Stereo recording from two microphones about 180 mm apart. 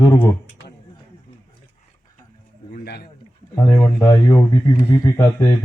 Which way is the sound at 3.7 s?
15° left (ahead or behind).